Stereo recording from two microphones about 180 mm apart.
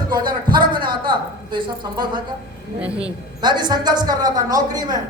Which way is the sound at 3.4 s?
25° right (ahead or behind).